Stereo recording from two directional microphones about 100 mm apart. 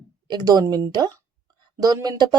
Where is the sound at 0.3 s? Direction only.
40° right (ahead or behind).